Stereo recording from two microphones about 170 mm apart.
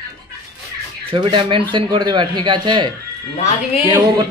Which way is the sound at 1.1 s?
30° right (ahead or behind).